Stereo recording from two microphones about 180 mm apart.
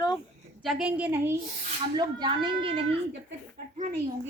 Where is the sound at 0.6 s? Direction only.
5° right (ahead or behind).